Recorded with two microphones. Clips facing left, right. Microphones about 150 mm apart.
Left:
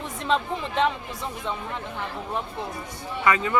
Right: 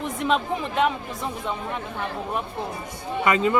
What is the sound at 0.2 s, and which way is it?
Speech, 10° right (ahead or behind).